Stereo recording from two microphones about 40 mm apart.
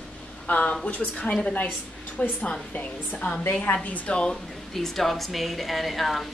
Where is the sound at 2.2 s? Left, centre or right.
Left.